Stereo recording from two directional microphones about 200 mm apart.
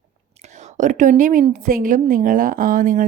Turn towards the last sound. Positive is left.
turn(degrees=-40)  # may be behind; listen again after turning